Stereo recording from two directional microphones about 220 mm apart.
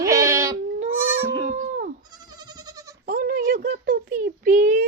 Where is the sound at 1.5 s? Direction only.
35° right (ahead or behind).